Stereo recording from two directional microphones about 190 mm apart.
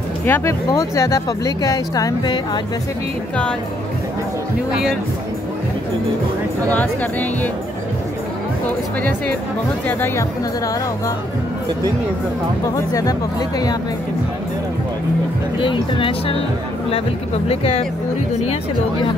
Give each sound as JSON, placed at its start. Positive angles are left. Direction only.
{"t": 0.2, "sound": "speech", "side_deg": 15}
{"t": 6.7, "sound": "speech", "side_deg": 10}
{"t": 9.8, "sound": "speech", "side_deg": 10}
{"t": 15.6, "sound": "speech", "side_deg": 25}
{"t": 17.5, "sound": "speech", "side_deg": 30}